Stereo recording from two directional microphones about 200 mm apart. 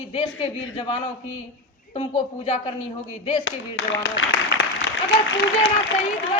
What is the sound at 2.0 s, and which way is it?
Speech, 30° left (ahead or behind).